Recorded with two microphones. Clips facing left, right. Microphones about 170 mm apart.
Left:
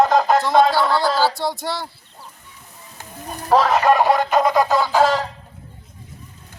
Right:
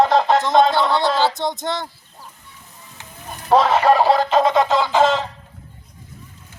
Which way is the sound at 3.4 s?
30° right (ahead or behind).